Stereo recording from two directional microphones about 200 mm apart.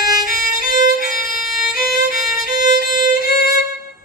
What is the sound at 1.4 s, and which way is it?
Violin, centre (ahead or behind).